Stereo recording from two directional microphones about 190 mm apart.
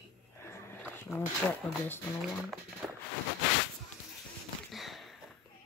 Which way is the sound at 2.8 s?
Centre (ahead or behind).